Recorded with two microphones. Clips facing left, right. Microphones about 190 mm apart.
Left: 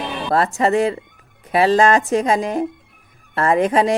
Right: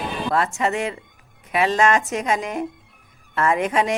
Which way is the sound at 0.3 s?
35° left (ahead or behind).